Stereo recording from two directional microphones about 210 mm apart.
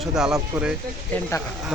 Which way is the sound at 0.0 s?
Centre (ahead or behind).